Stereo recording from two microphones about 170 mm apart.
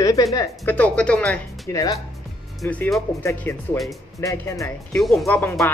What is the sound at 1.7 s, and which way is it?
Speech, 20° left (ahead or behind).